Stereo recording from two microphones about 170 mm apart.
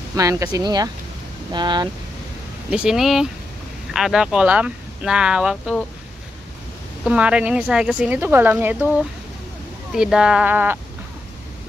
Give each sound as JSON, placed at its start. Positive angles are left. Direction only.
{"t": 0.1, "sound": "speech", "side_deg": -20}
{"t": 2.7, "sound": "speech", "side_deg": -5}
{"t": 7.1, "sound": "speech", "side_deg": -5}